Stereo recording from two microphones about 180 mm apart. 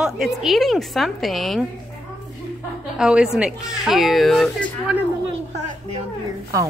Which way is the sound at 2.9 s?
5° right (ahead or behind).